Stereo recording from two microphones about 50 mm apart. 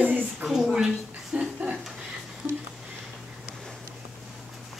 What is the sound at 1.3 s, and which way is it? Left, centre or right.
Speech, right.